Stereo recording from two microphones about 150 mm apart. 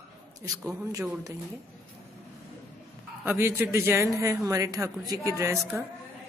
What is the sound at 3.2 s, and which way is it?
A woman's voice, 15° right (ahead or behind).